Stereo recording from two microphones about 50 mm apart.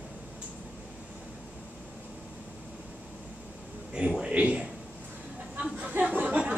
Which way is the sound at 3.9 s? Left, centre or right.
Centre.